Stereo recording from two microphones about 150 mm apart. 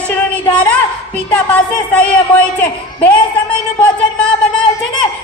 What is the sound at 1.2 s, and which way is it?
A woman's voice, 10° left (ahead or behind).